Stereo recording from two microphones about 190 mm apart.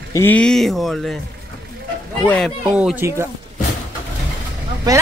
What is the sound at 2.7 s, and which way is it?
Speech, 5° right (ahead or behind).